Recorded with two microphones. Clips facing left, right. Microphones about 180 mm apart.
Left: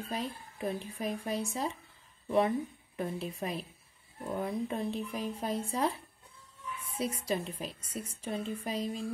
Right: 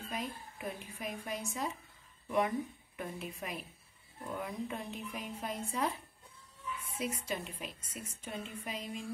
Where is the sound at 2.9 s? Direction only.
30° left (ahead or behind).